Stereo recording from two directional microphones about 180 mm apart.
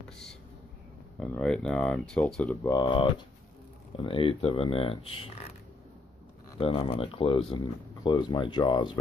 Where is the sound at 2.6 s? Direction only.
20° left (ahead or behind).